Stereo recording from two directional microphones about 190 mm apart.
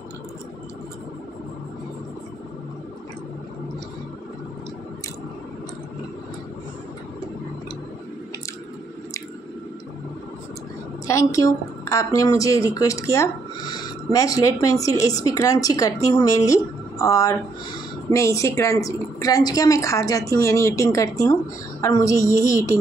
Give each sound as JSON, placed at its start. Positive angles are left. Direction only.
{"t": 11.1, "sound": "a woman's voice", "side_deg": 15}